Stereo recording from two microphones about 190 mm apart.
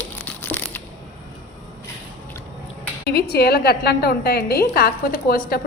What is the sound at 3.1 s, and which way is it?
A woman's voice, 55° left (ahead or behind).